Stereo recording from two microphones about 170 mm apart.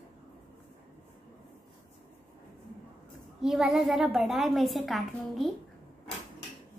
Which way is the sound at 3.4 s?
Centre (ahead or behind).